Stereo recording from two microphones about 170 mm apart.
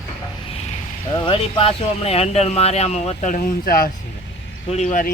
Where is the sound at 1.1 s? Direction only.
30° left (ahead or behind); by 3.9 s 60° left (ahead or behind).